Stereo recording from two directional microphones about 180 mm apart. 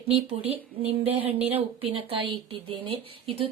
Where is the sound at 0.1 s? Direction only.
35° right (ahead or behind).